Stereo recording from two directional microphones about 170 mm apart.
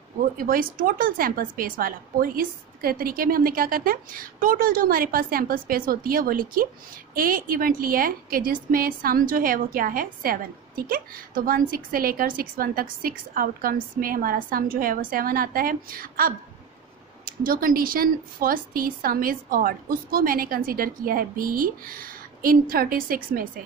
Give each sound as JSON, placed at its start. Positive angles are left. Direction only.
{"t": 0.2, "sound": "a woman's voice", "side_deg": -55}